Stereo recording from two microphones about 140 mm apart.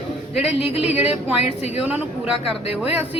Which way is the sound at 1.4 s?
50° left (ahead or behind).